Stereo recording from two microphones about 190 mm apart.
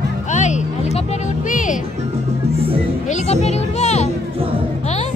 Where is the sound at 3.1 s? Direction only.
35° left (ahead or behind).